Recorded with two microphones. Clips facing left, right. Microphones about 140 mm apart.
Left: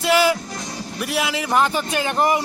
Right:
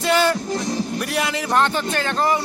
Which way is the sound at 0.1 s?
5° left (ahead or behind).